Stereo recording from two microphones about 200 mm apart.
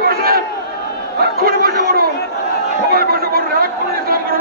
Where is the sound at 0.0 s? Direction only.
50° right (ahead or behind).